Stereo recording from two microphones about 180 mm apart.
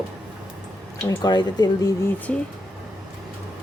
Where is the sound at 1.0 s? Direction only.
25° left (ahead or behind).